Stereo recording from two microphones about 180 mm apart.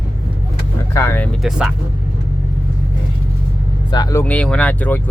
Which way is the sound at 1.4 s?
5° right (ahead or behind).